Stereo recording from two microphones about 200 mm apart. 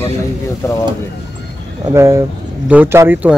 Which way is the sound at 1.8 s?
15° right (ahead or behind).